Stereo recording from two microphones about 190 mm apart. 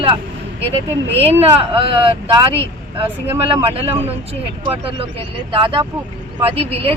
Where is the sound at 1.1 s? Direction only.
10° left (ahead or behind).